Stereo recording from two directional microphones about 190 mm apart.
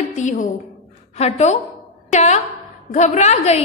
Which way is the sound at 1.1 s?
35° left (ahead or behind).